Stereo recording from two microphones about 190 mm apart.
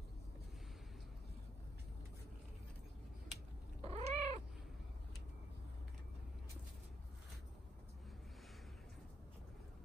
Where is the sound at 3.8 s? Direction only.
35° right (ahead or behind).